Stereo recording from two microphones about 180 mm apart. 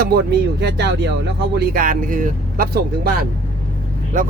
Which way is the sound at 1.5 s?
55° right (ahead or behind).